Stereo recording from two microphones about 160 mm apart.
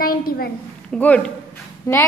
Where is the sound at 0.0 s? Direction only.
65° left (ahead or behind).